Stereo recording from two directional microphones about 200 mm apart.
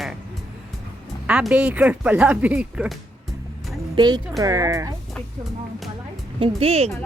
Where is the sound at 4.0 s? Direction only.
20° right (ahead or behind).